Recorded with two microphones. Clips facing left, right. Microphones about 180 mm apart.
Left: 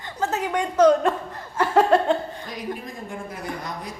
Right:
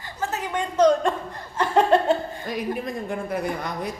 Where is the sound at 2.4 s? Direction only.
60° right (ahead or behind).